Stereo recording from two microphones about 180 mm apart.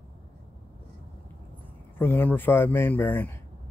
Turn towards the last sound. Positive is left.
turn(degrees=10)  # may be behind; listen again after turning